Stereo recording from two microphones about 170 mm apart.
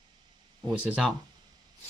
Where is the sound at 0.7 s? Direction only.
5° right (ahead or behind).